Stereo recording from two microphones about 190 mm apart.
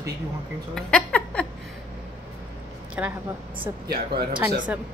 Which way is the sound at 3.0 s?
10° right (ahead or behind).